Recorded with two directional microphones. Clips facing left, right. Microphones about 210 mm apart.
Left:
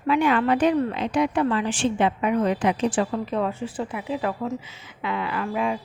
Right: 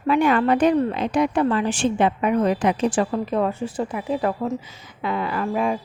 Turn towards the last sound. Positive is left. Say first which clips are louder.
# right 3 dB
turn(degrees=-45)  # may be behind; listen again after turning